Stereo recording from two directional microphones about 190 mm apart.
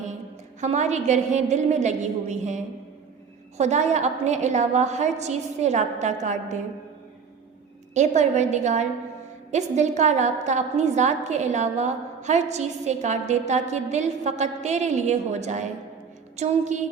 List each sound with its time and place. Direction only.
0.6 s a woman's voice: 35° right (ahead or behind)
3.6 s a woman's voice: 35° right (ahead or behind)
7.9 s a woman's voice: 40° right (ahead or behind)